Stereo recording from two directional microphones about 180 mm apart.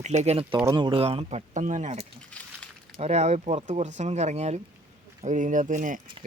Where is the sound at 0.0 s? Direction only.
40° right (ahead or behind).